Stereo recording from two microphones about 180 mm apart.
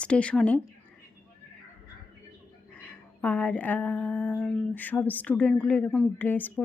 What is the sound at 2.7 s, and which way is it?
Speech, 10° left (ahead or behind).